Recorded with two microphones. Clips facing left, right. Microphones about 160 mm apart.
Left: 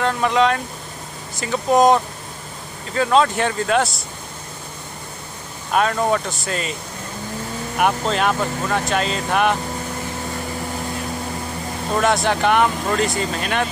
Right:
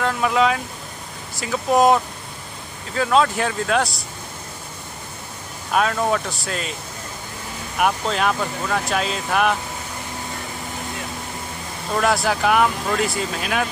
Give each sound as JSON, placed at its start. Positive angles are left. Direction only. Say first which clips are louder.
{"t": 0.0, "sound": "speech", "louder": "left 1 dB", "side_deg": 0}
{"t": 5.7, "sound": "speech", "louder": "left 1 dB", "side_deg": 0}
{"t": 7.8, "sound": "speech", "louder": "left 1 dB", "side_deg": 0}
{"t": 12.0, "sound": "speech", "louder": "left 1 dB", "side_deg": 0}